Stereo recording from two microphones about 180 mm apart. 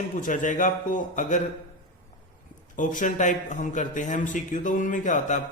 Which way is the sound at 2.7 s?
45° left (ahead or behind).